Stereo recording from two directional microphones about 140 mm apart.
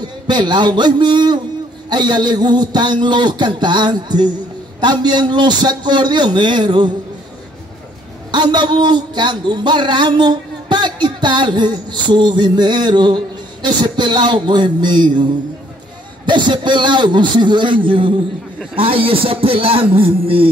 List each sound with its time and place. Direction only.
0.3 s speech: 35° right (ahead or behind)
8.3 s speech: 30° right (ahead or behind)